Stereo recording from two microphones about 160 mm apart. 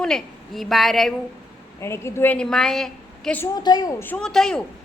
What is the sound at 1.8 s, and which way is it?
A woman's voice, 15° left (ahead or behind).